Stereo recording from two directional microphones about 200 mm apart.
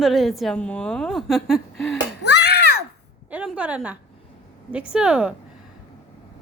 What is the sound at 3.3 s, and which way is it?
A woman's voice, 5° right (ahead or behind).